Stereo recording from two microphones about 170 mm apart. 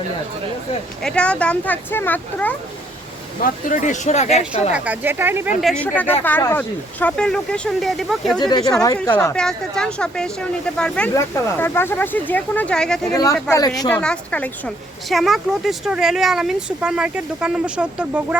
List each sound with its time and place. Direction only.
1.0 s speech: 5° left (ahead or behind)
3.4 s speech: 45° left (ahead or behind)
4.7 s speech: 10° right (ahead or behind)
5.5 s speech: centre (ahead or behind)
8.4 s speech: 25° left (ahead or behind)
9.0 s speech: 10° left (ahead or behind)
13.1 s speech: 20° left (ahead or behind)
13.9 s speech: 5° left (ahead or behind)